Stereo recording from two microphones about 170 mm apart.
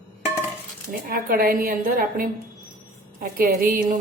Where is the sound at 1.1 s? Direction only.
60° right (ahead or behind).